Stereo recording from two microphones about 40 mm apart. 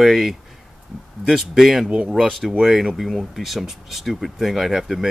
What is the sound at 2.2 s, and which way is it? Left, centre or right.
Speech, centre.